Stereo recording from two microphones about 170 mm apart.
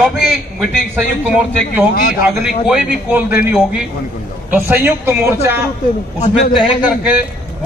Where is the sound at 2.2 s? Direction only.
5° right (ahead or behind).